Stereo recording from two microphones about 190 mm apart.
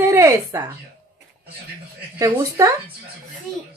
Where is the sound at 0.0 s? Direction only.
15° right (ahead or behind).